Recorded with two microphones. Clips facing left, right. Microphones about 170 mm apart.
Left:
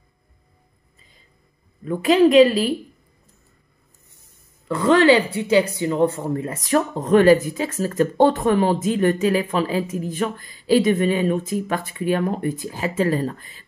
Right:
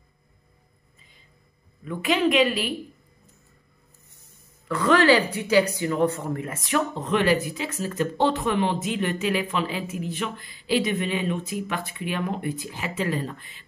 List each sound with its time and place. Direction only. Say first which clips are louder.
1.9 s speech: left 7 dB; 35° left (ahead or behind)
4.6 s speech: left 4 dB; 25° left (ahead or behind); by 13.7 s 40° left (ahead or behind)